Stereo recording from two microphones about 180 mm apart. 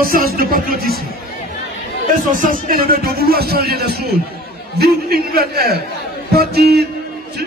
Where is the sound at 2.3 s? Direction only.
50° right (ahead or behind).